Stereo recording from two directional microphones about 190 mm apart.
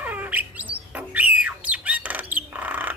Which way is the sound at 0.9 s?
10° right (ahead or behind).